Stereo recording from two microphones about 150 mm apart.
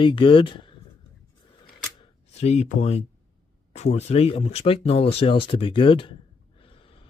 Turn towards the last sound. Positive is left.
turn(degrees=35)  # may be behind; listen again after turning